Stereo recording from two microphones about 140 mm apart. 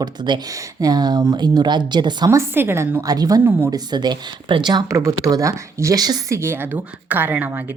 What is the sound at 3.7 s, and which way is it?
Speech, 30° right (ahead or behind).